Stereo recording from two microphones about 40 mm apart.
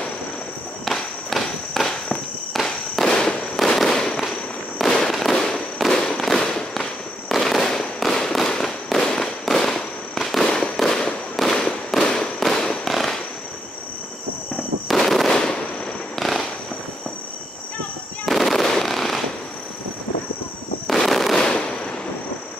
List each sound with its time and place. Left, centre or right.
0.8 s walk: centre
2.6 s fireworks: centre
15.0 s fireworks: centre
16.2 s fireworks: centre
18.2 s fireworks: centre
20.8 s fireworks: centre
21.4 s fireworks: left